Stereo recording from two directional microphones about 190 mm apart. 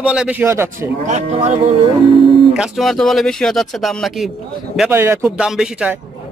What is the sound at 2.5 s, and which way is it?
A man's voice, centre (ahead or behind).